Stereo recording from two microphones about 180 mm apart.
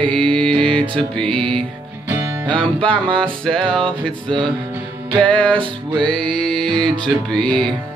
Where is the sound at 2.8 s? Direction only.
30° right (ahead or behind).